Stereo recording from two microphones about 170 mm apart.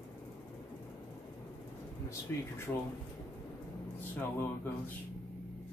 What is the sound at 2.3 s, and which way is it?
Speech, 15° left (ahead or behind).